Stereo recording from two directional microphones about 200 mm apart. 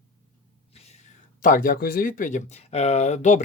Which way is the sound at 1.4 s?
45° left (ahead or behind).